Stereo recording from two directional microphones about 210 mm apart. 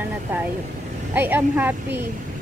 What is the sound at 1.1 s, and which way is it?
Speech, 10° right (ahead or behind).